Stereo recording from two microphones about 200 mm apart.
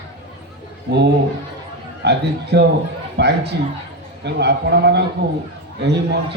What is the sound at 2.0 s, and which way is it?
A man's voice, 55° right (ahead or behind).